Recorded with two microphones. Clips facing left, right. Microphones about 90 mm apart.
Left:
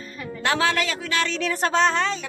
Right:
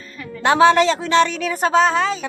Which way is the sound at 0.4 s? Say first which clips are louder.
Right 10 dB; 20° right (ahead or behind).